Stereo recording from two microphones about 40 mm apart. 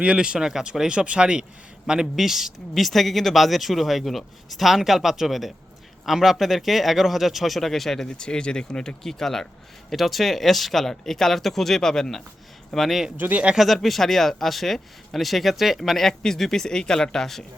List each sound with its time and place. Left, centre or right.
0.0 s speech: right
0.3 s speech: centre
0.9 s speech: right
2.1 s speech: centre
8.0 s speech: left
9.9 s speech: centre
13.1 s speech: right
13.8 s speech: centre